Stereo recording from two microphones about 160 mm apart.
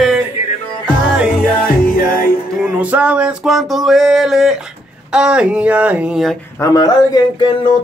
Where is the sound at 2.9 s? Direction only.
10° right (ahead or behind).